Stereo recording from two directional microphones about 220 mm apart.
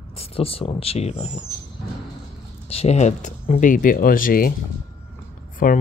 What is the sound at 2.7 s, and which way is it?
Speech, 30° left (ahead or behind).